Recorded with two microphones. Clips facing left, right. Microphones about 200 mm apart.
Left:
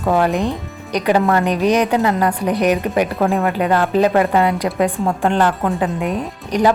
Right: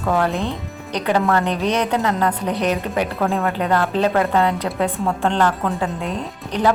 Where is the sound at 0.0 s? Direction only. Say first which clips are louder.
Left 4 dB; 15° left (ahead or behind).